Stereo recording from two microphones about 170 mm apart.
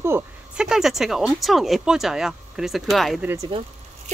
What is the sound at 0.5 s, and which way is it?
Speech, 5° right (ahead or behind).